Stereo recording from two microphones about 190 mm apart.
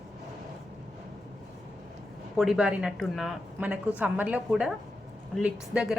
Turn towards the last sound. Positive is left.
turn(degrees=-5)  # may be behind; listen again after turning